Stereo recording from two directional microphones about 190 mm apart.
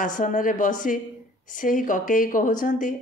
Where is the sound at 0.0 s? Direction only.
45° left (ahead or behind).